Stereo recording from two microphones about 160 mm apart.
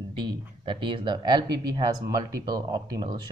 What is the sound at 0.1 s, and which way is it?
Speech, 30° right (ahead or behind).